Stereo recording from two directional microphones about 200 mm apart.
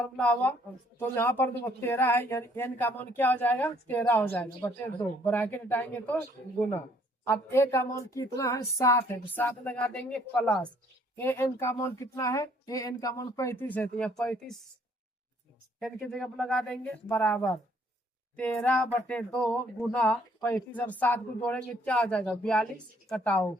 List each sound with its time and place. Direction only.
0.0 s speech: 5° left (ahead or behind)
7.3 s speech: 15° left (ahead or behind)
15.8 s speech: centre (ahead or behind)